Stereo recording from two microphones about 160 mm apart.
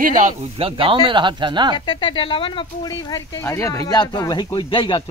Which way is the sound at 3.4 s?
15° left (ahead or behind).